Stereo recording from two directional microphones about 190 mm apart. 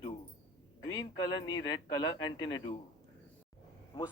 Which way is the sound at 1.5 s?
20° left (ahead or behind).